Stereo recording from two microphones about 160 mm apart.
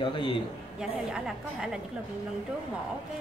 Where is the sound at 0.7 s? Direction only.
5° right (ahead or behind).